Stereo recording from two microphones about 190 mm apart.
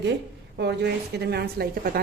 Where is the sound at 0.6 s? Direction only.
65° right (ahead or behind).